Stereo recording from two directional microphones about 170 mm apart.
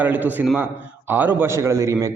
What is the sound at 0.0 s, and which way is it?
A man's voice, 10° right (ahead or behind).